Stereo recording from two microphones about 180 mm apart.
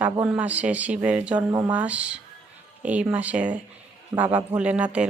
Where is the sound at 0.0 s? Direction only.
10° right (ahead or behind).